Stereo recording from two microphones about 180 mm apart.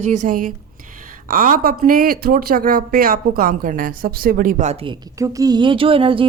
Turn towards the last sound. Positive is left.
turn(degrees=-30)  # may be behind; listen again after turning